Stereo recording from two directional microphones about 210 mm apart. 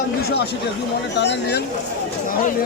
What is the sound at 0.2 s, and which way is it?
Speech, 50° left (ahead or behind).